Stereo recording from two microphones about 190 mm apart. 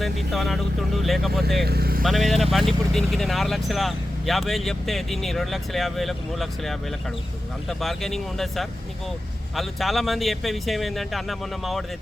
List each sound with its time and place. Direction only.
0.0 s speech: centre (ahead or behind)
1.6 s speech: 55° right (ahead or behind)
2.0 s speech: centre (ahead or behind)